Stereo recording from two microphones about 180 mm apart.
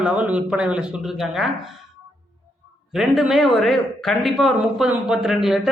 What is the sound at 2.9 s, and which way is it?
Speech, centre (ahead or behind).